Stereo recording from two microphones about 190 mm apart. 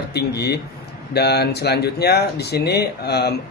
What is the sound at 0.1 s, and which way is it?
A man's voice, 60° left (ahead or behind).